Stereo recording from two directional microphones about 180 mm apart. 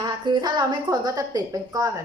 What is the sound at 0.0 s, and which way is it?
A woman's voice, 25° right (ahead or behind).